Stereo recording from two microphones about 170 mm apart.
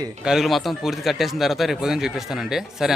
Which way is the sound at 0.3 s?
Centre (ahead or behind).